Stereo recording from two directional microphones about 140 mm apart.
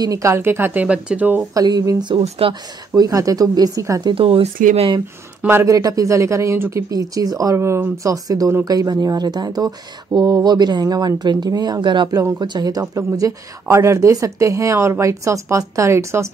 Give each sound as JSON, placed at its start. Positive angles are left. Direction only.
{"t": 0.0, "sound": "speech", "side_deg": -20}
{"t": 1.5, "sound": "speech", "side_deg": -25}
{"t": 2.2, "sound": "speech", "side_deg": -45}
{"t": 2.9, "sound": "speech", "side_deg": -25}
{"t": 4.1, "sound": "speech", "side_deg": -45}
{"t": 5.4, "sound": "speech", "side_deg": -15}